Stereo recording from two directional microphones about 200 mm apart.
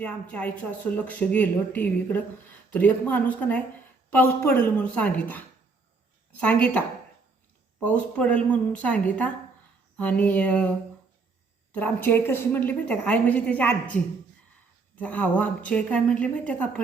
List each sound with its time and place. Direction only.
0.0 s a woman's voice: 5° left (ahead or behind)
6.4 s a woman's voice: 10° left (ahead or behind)